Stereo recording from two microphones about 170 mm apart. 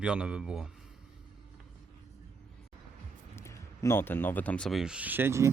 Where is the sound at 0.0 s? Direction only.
5° right (ahead or behind).